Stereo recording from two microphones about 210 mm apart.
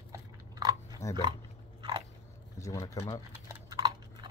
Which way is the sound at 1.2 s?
20° right (ahead or behind).